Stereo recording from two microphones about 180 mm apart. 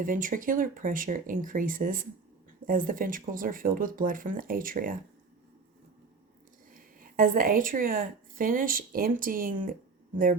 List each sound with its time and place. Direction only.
0.0 s speech: 50° right (ahead or behind)
6.7 s a woman's voice: 50° right (ahead or behind)